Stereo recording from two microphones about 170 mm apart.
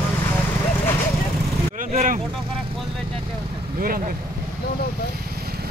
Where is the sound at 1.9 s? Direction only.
50° right (ahead or behind).